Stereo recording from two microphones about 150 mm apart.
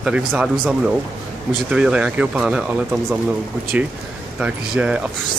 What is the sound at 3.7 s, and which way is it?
Speech, 10° right (ahead or behind).